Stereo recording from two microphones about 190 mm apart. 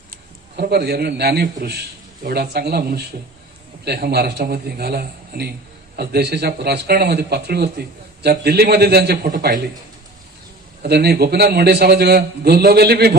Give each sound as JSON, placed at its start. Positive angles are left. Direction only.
{"t": 0.1, "sound": "a man's voice", "side_deg": -55}
{"t": 10.8, "sound": "a man's voice", "side_deg": -55}